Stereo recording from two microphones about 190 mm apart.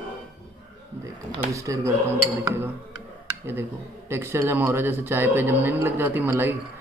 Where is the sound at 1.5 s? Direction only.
15° right (ahead or behind).